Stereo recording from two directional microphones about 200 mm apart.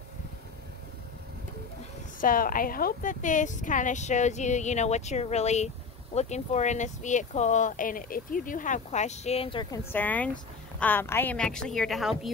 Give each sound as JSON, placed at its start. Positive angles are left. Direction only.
{"t": 2.1, "sound": "speech", "side_deg": 45}
{"t": 9.9, "sound": "a woman's voice", "side_deg": 10}